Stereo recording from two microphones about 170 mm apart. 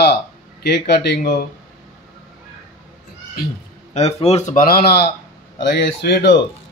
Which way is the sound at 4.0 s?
40° left (ahead or behind).